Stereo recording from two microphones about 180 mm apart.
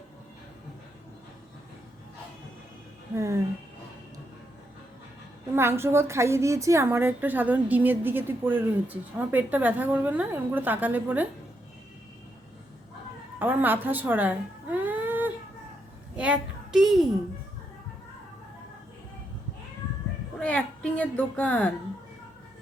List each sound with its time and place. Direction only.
3.2 s a woman's voice: 15° right (ahead or behind)
5.5 s a woman's voice: 15° right (ahead or behind)
13.4 s a child's voice: 10° right (ahead or behind)
20.4 s a woman's voice: 5° left (ahead or behind)